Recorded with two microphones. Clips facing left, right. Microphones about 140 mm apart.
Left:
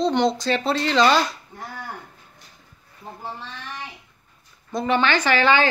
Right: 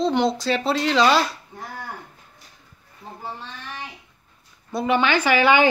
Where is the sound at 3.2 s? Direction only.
Centre (ahead or behind).